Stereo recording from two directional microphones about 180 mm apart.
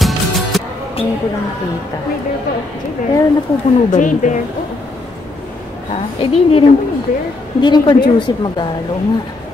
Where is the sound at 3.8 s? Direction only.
45° left (ahead or behind).